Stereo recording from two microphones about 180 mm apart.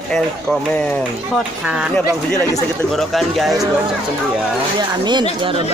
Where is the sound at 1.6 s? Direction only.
5° right (ahead or behind).